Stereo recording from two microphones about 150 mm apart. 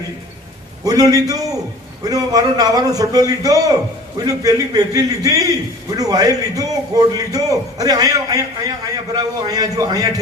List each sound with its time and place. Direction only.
0.9 s a man's voice: 25° right (ahead or behind)